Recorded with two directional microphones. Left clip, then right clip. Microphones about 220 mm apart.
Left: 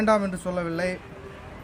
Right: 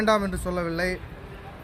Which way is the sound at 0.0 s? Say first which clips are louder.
Even; 5° left (ahead or behind).